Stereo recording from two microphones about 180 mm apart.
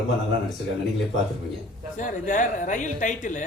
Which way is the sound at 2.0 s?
45° left (ahead or behind).